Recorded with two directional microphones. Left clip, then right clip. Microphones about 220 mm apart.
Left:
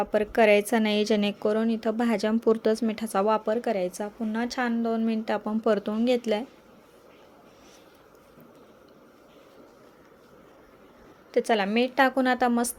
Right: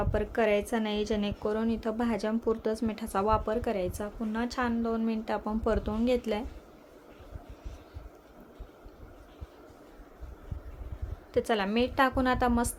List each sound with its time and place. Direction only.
0.0 s a woman's voice: 20° left (ahead or behind)
11.3 s a woman's voice: 15° left (ahead or behind)